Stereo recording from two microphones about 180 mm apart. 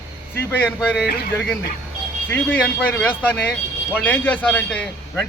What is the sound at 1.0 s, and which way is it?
Speech, 60° left (ahead or behind).